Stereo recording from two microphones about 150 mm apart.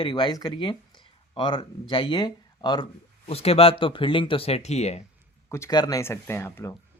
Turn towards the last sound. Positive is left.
turn(degrees=15)  # may be behind; listen again after turning